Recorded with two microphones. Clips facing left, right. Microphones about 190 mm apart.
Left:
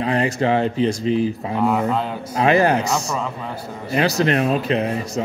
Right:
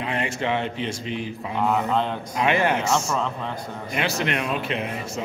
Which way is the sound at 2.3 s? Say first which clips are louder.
Left 6 dB; 35° left (ahead or behind).